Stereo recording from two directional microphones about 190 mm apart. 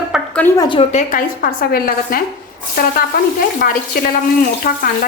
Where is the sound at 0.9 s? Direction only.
45° left (ahead or behind).